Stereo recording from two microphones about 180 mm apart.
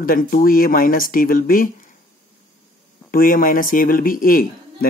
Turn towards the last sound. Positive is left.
turn(degrees=55)  # may be behind; listen again after turning